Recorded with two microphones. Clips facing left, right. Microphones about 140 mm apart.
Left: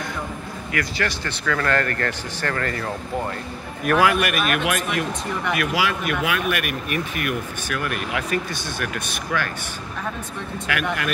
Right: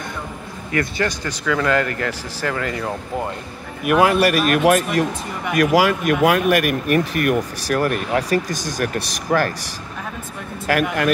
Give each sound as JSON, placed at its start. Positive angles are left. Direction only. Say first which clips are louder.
{"t": 0.7, "sound": "speech", "louder": "right 4 dB", "side_deg": -20}
{"t": 4.0, "sound": "speech", "louder": "right 6 dB", "side_deg": -30}
{"t": 10.7, "sound": "speech", "louder": "right 7 dB", "side_deg": -40}